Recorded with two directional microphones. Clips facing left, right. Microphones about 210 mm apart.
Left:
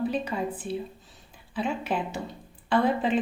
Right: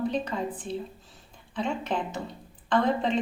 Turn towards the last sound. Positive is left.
turn(degrees=5)  # may be behind; listen again after turning